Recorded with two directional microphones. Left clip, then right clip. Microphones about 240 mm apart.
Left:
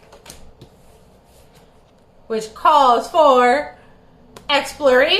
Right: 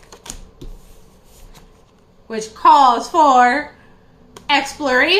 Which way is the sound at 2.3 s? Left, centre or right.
Centre.